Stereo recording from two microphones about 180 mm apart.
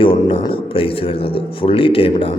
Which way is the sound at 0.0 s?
25° left (ahead or behind).